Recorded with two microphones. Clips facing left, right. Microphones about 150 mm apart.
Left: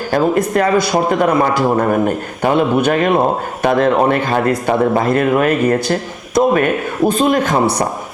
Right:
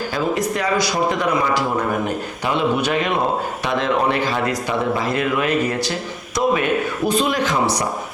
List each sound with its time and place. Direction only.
0.1 s a man's voice: 50° left (ahead or behind)